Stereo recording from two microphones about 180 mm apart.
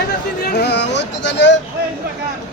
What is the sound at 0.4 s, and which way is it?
Music, 65° left (ahead or behind).